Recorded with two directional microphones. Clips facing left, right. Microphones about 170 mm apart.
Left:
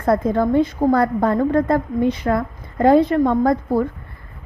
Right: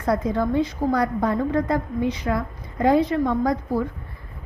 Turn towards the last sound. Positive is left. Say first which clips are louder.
# left 5 dB
turn(degrees=55)  # may be behind; listen again after turning